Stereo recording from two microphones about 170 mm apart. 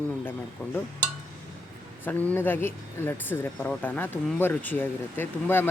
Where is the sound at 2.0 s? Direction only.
10° left (ahead or behind).